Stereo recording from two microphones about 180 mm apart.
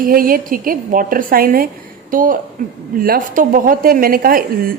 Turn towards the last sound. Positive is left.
turn(degrees=-55)  # may be behind; listen again after turning